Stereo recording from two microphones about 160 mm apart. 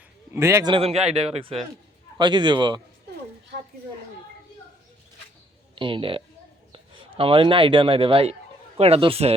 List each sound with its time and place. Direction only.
0.3 s a man's voice: 15° right (ahead or behind)
0.7 s a man's voice: 40° right (ahead or behind)
5.7 s a man's voice: 30° right (ahead or behind)